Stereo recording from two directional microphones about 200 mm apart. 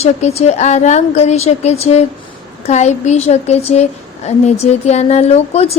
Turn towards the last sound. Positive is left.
turn(degrees=30)  # may be behind; listen again after turning